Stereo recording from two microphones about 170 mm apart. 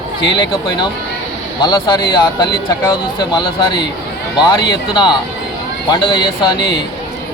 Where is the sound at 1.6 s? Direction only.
25° left (ahead or behind).